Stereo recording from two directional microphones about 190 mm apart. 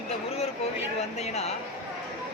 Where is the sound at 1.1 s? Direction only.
35° left (ahead or behind).